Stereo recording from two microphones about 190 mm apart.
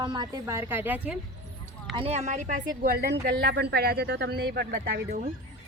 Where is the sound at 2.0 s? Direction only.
35° right (ahead or behind); by 5.1 s 60° right (ahead or behind).